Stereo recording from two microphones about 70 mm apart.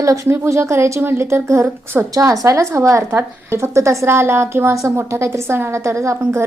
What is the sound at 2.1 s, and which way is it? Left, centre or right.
Speech, right.